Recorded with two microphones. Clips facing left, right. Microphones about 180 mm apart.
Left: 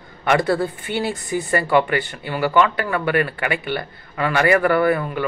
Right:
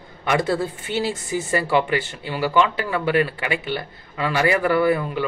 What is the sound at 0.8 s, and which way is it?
Speech, 55° left (ahead or behind).